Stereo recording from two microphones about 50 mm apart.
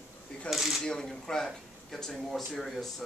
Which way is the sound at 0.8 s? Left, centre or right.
Centre.